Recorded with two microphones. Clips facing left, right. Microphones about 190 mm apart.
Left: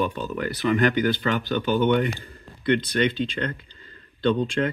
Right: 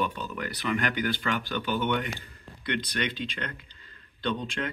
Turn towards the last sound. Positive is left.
turn(degrees=35)  # may be behind; listen again after turning